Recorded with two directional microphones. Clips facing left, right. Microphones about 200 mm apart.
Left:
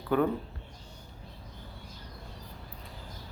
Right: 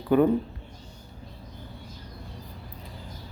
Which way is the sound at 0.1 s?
15° right (ahead or behind).